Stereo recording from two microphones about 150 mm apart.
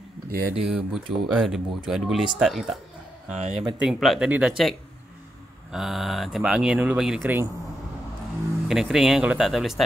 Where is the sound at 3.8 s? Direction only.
5° right (ahead or behind).